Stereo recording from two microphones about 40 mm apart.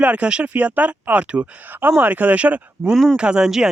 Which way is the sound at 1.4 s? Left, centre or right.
Right.